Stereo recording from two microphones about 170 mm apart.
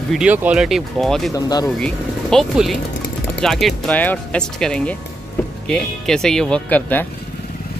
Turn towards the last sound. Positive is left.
turn(degrees=10)  # may be behind; listen again after turning